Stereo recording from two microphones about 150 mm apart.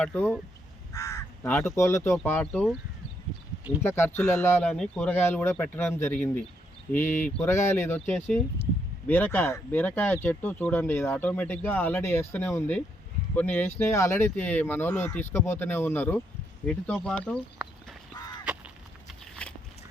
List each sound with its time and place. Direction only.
0.0 s speech: 15° left (ahead or behind)
3.8 s speech: 15° left (ahead or behind)
7.4 s speech: 15° left (ahead or behind)
18.4 s honk: 10° right (ahead or behind)
19.4 s biting: 5° left (ahead or behind)